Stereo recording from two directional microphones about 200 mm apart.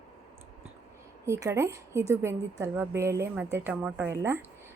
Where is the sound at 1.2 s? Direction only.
15° right (ahead or behind).